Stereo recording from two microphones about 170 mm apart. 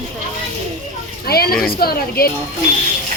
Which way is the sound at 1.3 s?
65° left (ahead or behind).